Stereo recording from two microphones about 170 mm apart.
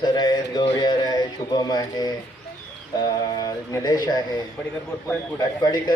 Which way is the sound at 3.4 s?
20° left (ahead or behind).